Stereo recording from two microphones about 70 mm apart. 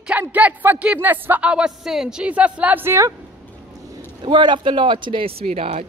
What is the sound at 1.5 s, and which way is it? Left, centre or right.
A man's voice, centre.